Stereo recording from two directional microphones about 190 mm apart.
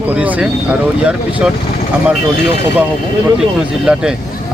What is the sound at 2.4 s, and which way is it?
Speech, 65° left (ahead or behind).